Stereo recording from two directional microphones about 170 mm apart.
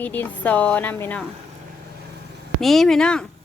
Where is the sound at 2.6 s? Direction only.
Centre (ahead or behind).